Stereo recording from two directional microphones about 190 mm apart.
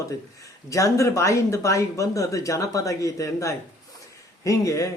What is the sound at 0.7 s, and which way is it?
Speech, 15° left (ahead or behind).